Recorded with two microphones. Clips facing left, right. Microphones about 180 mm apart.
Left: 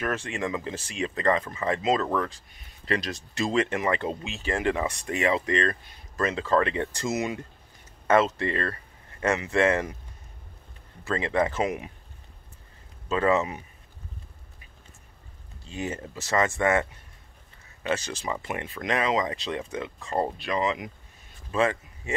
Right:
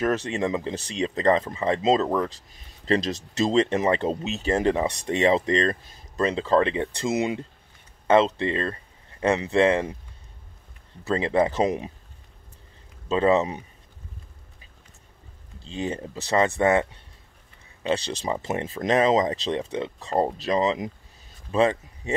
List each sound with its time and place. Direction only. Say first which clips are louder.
0.3 s speech: right 4 dB; 25° right (ahead or behind)
11.1 s speech: right 4 dB; 30° right (ahead or behind)
13.1 s speech: right 3 dB; 30° right (ahead or behind)
15.7 s speech: right 3 dB; 30° right (ahead or behind)
20.4 s speech: right 4 dB; 35° right (ahead or behind)